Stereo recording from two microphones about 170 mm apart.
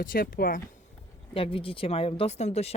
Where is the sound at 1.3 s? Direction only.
35° left (ahead or behind).